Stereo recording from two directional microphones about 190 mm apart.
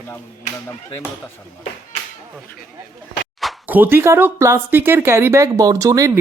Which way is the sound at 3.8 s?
10° right (ahead or behind).